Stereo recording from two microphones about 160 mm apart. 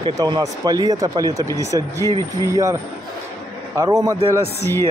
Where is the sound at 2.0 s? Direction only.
20° left (ahead or behind).